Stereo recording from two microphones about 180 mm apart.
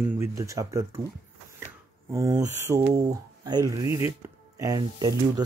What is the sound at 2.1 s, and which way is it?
Speech, 20° right (ahead or behind).